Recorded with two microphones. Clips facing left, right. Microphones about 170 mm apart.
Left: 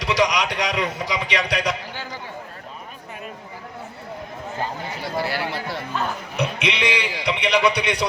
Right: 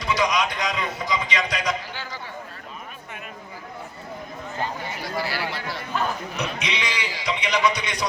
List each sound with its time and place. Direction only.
0.0 s a man's voice: 75° left (ahead or behind)
5.2 s a sound: 55° left (ahead or behind)
6.3 s bleat: 60° left (ahead or behind)